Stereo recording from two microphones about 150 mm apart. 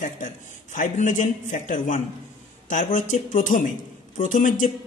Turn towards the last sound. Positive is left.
turn(degrees=60)  # may be behind; listen again after turning